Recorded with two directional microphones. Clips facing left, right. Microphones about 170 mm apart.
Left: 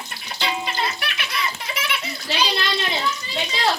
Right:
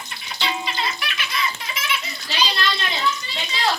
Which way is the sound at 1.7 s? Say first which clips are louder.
Left 1 dB; 60° left (ahead or behind).